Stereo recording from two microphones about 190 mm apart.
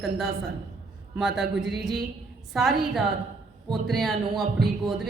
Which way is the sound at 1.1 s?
5° right (ahead or behind).